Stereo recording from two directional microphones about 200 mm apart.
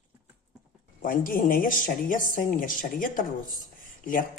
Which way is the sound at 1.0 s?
45° left (ahead or behind).